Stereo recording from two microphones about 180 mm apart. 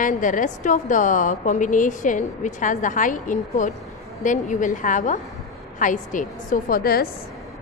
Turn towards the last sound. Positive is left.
turn(degrees=55)  # may be behind; listen again after turning